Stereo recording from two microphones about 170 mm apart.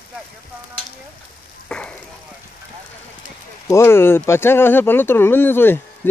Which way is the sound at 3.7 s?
15° left (ahead or behind).